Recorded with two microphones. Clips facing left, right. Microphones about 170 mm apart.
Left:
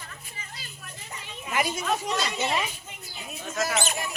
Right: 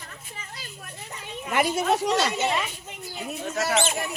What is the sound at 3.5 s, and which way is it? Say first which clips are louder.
Speech: right 2 dB; 70° right (ahead or behind).